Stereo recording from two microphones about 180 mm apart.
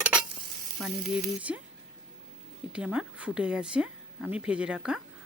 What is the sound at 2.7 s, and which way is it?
Speech, 5° right (ahead or behind).